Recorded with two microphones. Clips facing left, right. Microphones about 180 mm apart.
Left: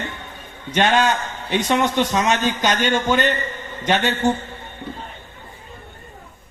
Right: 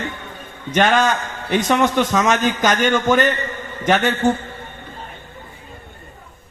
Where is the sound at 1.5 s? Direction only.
50° right (ahead or behind).